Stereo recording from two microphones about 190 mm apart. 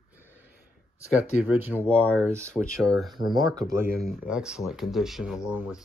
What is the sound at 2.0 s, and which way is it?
Speech, 5° left (ahead or behind).